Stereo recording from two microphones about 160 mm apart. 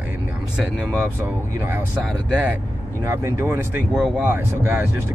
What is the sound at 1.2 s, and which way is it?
Speech, 15° right (ahead or behind).